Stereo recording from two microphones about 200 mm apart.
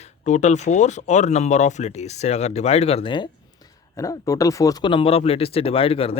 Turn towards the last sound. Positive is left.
turn(degrees=30)  # may be behind; listen again after turning